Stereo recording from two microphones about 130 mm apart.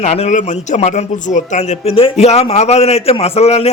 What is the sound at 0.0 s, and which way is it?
A man's voice, 60° left (ahead or behind).